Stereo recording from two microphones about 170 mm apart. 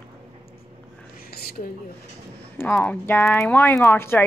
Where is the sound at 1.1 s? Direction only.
65° left (ahead or behind).